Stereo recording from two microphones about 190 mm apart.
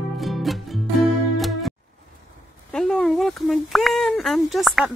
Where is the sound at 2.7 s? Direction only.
Centre (ahead or behind).